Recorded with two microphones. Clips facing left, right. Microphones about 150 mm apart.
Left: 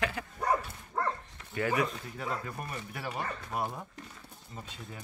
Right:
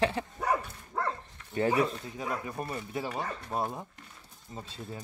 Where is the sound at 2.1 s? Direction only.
15° right (ahead or behind).